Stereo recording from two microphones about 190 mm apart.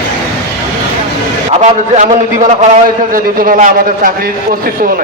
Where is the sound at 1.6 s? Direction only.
40° right (ahead or behind).